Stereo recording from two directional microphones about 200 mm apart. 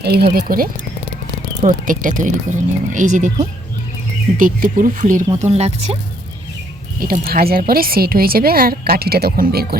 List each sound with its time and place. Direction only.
0.0 s speech: 50° right (ahead or behind)
4.4 s speech: 45° right (ahead or behind)
7.0 s speech: 45° right (ahead or behind)